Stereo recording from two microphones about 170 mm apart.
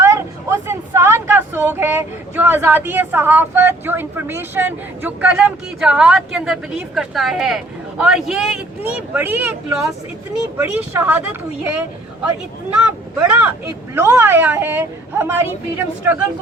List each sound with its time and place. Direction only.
0.0 s speech: 15° right (ahead or behind)
12.8 s speech: 5° right (ahead or behind)